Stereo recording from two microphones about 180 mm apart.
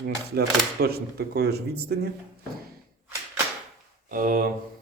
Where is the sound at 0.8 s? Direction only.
60° right (ahead or behind).